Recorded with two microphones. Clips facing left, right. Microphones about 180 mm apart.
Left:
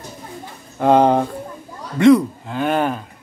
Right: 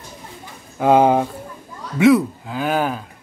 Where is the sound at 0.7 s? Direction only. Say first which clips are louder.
Even; 5° right (ahead or behind).